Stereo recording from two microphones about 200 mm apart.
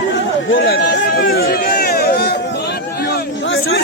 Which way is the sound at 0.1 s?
65° left (ahead or behind).